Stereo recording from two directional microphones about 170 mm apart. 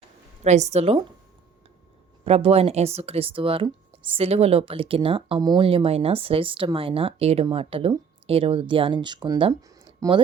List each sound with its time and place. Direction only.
0.4 s speech: 40° right (ahead or behind)
2.2 s speech: 35° right (ahead or behind)